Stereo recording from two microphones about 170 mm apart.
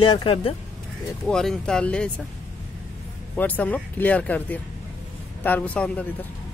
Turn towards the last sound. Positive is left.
turn(degrees=10)  # may be behind; listen again after turning